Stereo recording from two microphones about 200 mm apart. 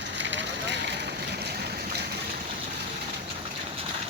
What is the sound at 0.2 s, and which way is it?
Boat, 65° right (ahead or behind).